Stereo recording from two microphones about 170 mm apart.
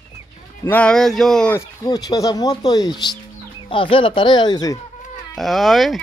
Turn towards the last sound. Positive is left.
turn(degrees=0)  # may be behind; listen again after turning